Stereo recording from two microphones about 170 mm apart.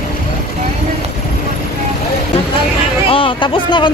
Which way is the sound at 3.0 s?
30° left (ahead or behind).